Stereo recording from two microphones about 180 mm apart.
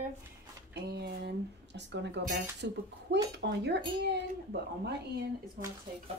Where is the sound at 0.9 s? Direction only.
65° right (ahead or behind).